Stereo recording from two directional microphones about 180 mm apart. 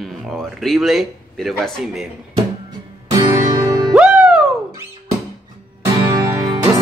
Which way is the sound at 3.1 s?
20° right (ahead or behind).